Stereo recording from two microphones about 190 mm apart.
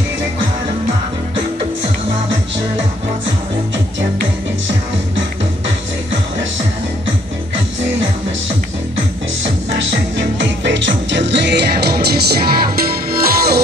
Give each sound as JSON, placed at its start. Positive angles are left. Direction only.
{"t": 9.4, "sound": "music", "side_deg": -70}